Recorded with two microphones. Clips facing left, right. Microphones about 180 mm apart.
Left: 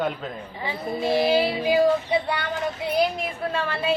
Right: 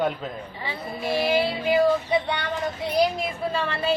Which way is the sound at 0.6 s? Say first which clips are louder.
Left 5 dB; 20° left (ahead or behind).